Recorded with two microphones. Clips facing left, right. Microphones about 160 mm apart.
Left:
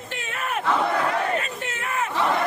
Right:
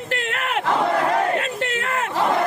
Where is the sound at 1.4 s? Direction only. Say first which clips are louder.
Right 6 dB; 75° right (ahead or behind).